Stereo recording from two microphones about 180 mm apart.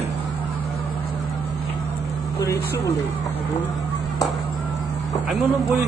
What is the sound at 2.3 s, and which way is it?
Vehicle, 15° left (ahead or behind).